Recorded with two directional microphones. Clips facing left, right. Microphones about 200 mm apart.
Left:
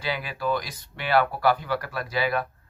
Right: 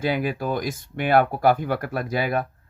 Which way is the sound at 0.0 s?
50° right (ahead or behind).